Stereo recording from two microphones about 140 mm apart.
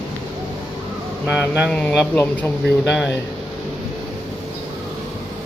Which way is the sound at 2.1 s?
15° left (ahead or behind).